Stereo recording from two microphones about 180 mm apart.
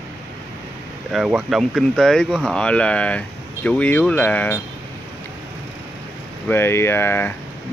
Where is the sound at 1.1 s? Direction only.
Centre (ahead or behind).